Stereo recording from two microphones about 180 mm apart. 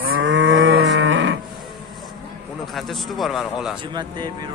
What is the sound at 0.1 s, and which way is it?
Moo, 90° right.